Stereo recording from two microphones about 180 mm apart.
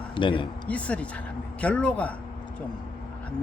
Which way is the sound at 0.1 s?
25° left (ahead or behind).